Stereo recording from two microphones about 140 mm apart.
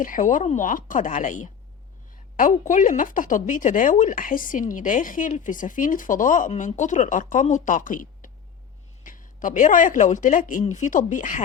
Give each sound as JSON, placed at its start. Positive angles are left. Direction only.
{"t": 0.0, "sound": "a woman's voice", "side_deg": 70}
{"t": 6.5, "sound": "a woman's voice", "side_deg": 60}